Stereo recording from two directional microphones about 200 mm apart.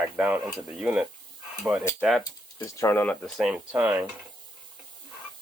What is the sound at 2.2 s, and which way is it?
Speech, 15° left (ahead or behind).